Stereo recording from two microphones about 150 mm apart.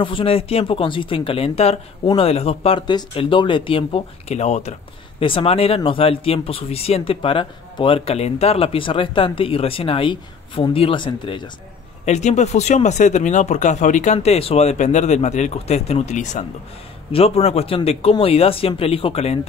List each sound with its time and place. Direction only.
0.0 s speech: 35° left (ahead or behind)
5.2 s speech: 35° left (ahead or behind)
12.0 s speech: 50° left (ahead or behind)